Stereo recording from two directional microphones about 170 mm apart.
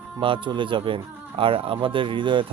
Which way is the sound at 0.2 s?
30° right (ahead or behind).